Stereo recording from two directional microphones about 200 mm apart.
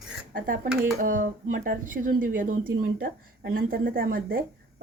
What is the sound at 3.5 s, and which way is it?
Speech, 45° right (ahead or behind).